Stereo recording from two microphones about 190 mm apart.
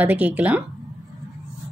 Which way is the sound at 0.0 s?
10° right (ahead or behind).